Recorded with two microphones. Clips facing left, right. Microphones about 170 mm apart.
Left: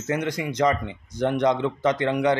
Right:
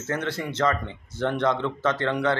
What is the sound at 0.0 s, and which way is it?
Speech, 15° left (ahead or behind).